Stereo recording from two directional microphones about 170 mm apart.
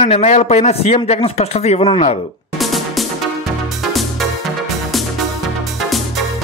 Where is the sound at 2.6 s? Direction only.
Centre (ahead or behind).